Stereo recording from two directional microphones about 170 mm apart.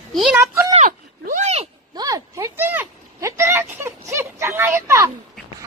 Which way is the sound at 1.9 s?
20° right (ahead or behind).